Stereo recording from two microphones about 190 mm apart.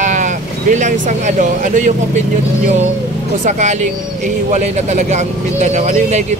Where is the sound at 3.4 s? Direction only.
40° right (ahead or behind).